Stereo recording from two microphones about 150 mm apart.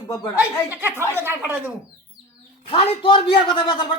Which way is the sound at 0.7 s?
10° right (ahead or behind).